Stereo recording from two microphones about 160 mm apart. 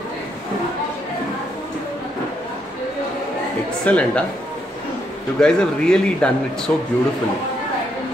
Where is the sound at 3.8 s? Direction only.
5° left (ahead or behind).